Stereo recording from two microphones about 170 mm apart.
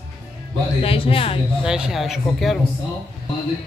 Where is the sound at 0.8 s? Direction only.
35° left (ahead or behind).